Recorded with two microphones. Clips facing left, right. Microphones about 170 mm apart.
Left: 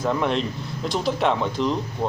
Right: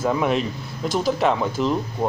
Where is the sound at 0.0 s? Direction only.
5° right (ahead or behind).